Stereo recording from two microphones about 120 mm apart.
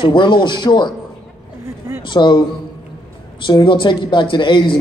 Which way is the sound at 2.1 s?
40° left (ahead or behind).